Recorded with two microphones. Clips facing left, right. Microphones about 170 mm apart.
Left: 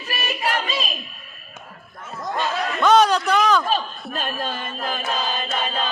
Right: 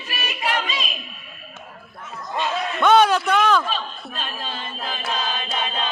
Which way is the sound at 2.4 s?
Centre (ahead or behind).